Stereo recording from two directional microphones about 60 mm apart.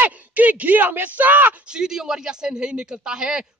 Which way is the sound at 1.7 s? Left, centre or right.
Centre.